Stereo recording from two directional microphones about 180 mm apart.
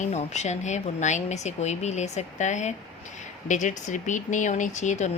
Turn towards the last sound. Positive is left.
turn(degrees=40)  # may be behind; listen again after turning